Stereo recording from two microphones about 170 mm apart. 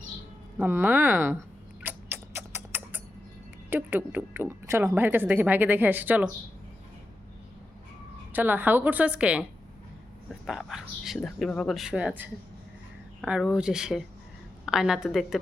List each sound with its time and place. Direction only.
0.6 s a sound: 10° right (ahead or behind)
3.7 s speech: 10° right (ahead or behind)
8.3 s speech: 10° right (ahead or behind)